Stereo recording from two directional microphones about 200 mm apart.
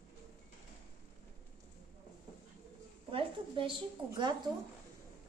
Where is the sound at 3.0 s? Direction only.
25° right (ahead or behind).